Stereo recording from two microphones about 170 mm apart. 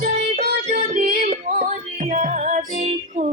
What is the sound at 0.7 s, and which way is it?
Music, 55° right (ahead or behind).